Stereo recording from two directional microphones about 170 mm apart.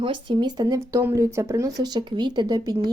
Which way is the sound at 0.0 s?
30° right (ahead or behind).